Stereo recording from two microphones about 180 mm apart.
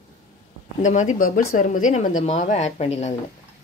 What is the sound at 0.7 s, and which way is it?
A woman's voice, 45° left (ahead or behind).